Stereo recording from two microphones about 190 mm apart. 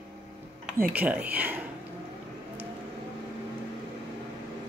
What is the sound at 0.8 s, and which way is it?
Speech, 10° right (ahead or behind).